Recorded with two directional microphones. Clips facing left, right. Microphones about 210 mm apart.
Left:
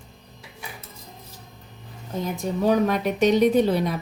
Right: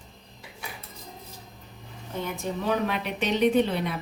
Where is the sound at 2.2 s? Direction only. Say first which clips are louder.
Left 6 dB; 40° left (ahead or behind).